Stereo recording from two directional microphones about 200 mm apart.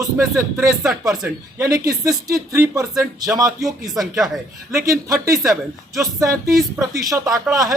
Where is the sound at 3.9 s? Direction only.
Centre (ahead or behind).